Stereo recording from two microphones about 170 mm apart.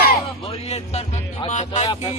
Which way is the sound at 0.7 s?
40° left (ahead or behind).